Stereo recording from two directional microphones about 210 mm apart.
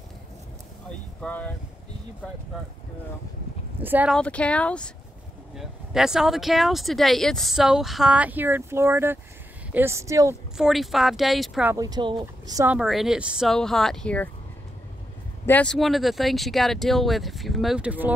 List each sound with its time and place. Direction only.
1.2 s speech: 5° left (ahead or behind)
3.8 s speech: 10° right (ahead or behind)
4.2 s speech: 5° left (ahead or behind); by 10.3 s 15° right (ahead or behind)
10.6 s speech: centre (ahead or behind)
11.7 s speech: 20° right (ahead or behind)
12.7 s speech: centre (ahead or behind)
15.4 s speech: 5° left (ahead or behind)